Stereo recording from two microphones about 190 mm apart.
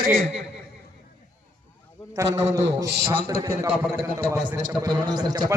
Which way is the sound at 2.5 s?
15° right (ahead or behind).